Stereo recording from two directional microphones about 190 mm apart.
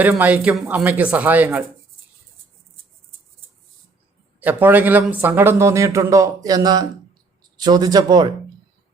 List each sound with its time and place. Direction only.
0.0 s speech: 10° right (ahead or behind)
4.4 s speech: 10° right (ahead or behind)